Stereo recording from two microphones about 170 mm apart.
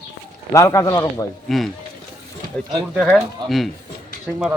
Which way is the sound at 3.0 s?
5° right (ahead or behind).